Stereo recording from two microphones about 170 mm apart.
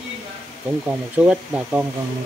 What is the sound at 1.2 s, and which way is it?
Speech, 5° right (ahead or behind).